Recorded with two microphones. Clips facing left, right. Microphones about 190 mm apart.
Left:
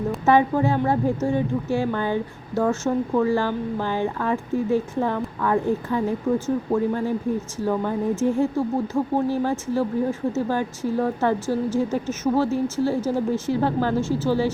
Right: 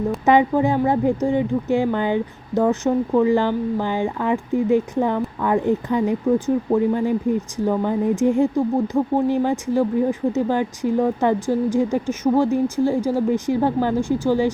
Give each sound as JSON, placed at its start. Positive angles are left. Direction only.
{"t": 0.3, "sound": "speech", "side_deg": -15}